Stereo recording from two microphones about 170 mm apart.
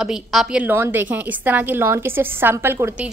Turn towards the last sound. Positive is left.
turn(degrees=-15)  # may be behind; listen again after turning